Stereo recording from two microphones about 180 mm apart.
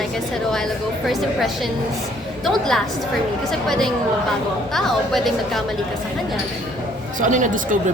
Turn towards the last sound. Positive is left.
turn(degrees=-45)  # may be behind; listen again after turning